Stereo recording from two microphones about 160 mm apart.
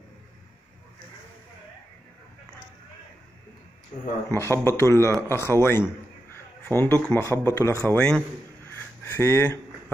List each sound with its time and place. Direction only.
4.3 s speech: 15° left (ahead or behind)
7.8 s speech: 5° left (ahead or behind)
8.6 s a sound: 10° left (ahead or behind)